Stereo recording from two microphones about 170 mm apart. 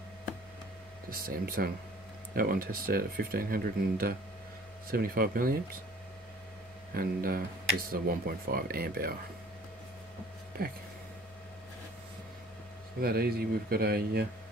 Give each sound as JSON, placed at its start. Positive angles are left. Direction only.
{"t": 1.1, "sound": "speech", "side_deg": -60}
{"t": 6.9, "sound": "speech", "side_deg": -60}
{"t": 10.6, "sound": "speech", "side_deg": -60}
{"t": 13.0, "sound": "speech", "side_deg": -65}